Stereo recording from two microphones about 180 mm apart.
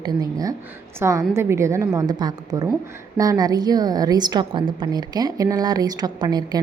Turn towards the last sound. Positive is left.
turn(degrees=-20)  # may be behind; listen again after turning